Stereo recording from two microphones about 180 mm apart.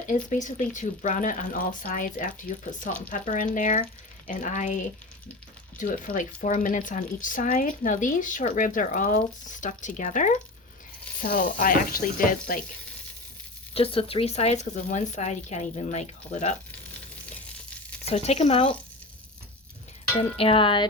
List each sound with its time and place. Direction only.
0.1 s speech: 45° left (ahead or behind)
13.7 s a woman's voice: 30° left (ahead or behind)
18.0 s a woman's voice: 35° left (ahead or behind)
20.4 s a sound: 30° left (ahead or behind)